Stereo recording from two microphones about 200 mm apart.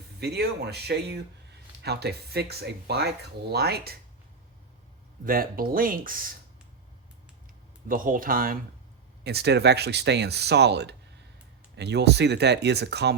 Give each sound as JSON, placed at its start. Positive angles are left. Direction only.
{"t": 0.2, "sound": "speech", "side_deg": -55}
{"t": 5.2, "sound": "speech", "side_deg": -45}
{"t": 7.9, "sound": "speech", "side_deg": -45}
{"t": 9.2, "sound": "speech", "side_deg": -55}